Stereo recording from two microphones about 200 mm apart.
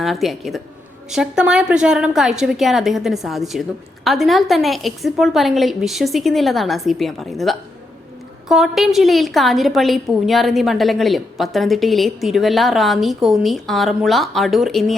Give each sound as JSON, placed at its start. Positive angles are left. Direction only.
{"t": 0.0, "sound": "a woman's voice", "side_deg": 0}